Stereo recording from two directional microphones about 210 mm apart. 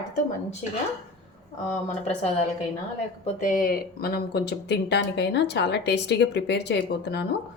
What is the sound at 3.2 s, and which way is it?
Speech, 40° left (ahead or behind).